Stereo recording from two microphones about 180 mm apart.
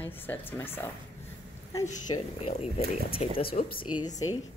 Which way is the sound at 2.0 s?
35° left (ahead or behind).